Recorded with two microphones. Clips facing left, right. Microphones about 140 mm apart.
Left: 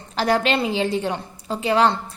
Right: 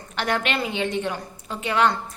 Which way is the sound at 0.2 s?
35° left (ahead or behind).